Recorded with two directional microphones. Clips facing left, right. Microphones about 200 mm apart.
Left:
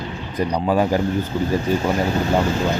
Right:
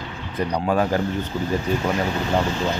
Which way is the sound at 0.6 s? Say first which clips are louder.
Left 2 dB; 10° left (ahead or behind).